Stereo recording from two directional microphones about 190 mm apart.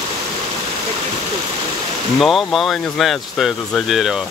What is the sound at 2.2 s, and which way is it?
Speech, centre (ahead or behind).